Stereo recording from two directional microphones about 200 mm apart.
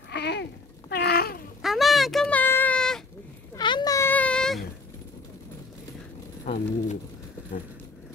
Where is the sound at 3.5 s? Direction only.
20° left (ahead or behind); by 4.6 s 5° left (ahead or behind).